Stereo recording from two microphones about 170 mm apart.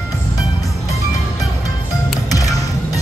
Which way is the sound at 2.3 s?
20° left (ahead or behind).